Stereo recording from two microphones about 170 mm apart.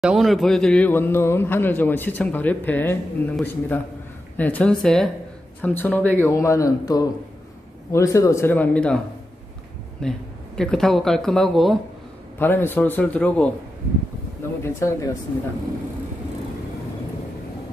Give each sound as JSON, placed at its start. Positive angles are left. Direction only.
{"t": 0.0, "sound": "a man's voice", "side_deg": 0}
{"t": 10.0, "sound": "speech", "side_deg": 5}
{"t": 12.4, "sound": "a man's voice", "side_deg": 10}
{"t": 14.6, "sound": "a man's voice", "side_deg": 15}